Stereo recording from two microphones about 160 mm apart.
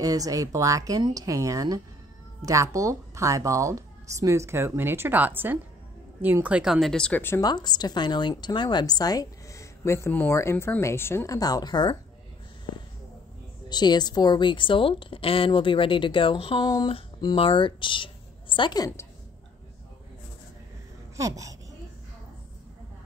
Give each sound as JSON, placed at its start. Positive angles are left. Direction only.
{"t": 0.0, "sound": "a woman's voice", "side_deg": -20}
{"t": 7.4, "sound": "a woman's voice", "side_deg": 25}
{"t": 13.7, "sound": "a woman's voice", "side_deg": 25}
{"t": 21.2, "sound": "a woman's voice", "side_deg": -20}